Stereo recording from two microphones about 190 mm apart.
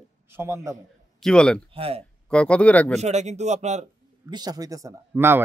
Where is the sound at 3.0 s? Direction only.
35° right (ahead or behind).